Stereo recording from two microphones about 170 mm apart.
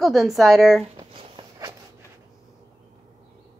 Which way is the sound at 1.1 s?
30° right (ahead or behind).